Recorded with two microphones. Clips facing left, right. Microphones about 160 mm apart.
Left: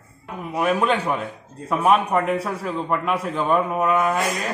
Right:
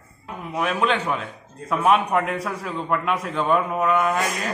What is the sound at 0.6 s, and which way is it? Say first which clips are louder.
A man's voice: left 2 dB; 5° left (ahead or behind).